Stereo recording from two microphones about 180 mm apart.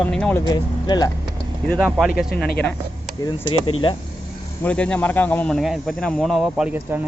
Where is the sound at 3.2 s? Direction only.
25° left (ahead or behind).